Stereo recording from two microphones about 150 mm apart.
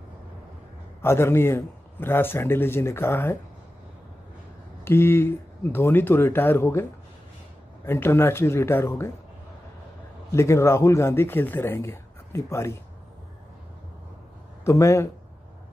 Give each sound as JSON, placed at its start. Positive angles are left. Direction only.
{"t": 1.0, "sound": "speech", "side_deg": 15}
{"t": 4.8, "sound": "speech", "side_deg": 15}
{"t": 10.3, "sound": "speech", "side_deg": 20}
{"t": 14.6, "sound": "speech", "side_deg": 20}